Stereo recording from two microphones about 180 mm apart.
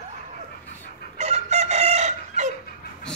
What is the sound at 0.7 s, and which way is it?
Chicken, 35° right (ahead or behind).